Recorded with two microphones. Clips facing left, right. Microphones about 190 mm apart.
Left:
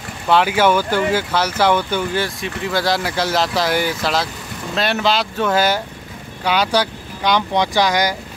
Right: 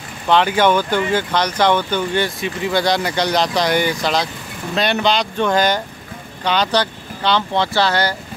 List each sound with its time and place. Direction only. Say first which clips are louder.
0.3 s speech: even; 5° left (ahead or behind)